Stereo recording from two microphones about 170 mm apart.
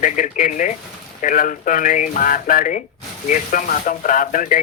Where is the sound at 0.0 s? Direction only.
50° left (ahead or behind).